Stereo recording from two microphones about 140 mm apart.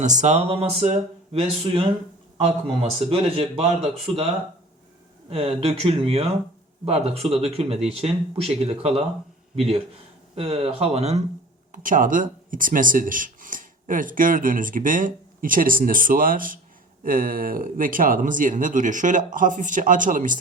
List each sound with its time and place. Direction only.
0.0 s speech: 60° right (ahead or behind); by 1.8 s 45° right (ahead or behind)
3.1 s speech: 45° right (ahead or behind)
5.3 s speech: 45° right (ahead or behind)
11.7 s speech: 70° right (ahead or behind)